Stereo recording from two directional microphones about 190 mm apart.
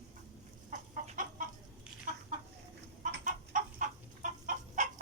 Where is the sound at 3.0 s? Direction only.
45° right (ahead or behind).